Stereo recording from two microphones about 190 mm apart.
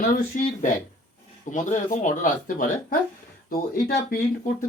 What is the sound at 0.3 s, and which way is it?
Speech, 45° left (ahead or behind).